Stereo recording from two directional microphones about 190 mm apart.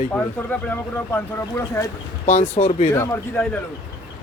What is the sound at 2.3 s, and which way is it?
Speech, 35° left (ahead or behind).